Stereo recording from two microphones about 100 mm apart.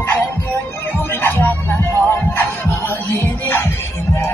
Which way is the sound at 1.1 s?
25° left (ahead or behind).